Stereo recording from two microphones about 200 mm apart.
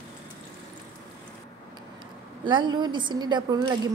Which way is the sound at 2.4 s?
25° right (ahead or behind).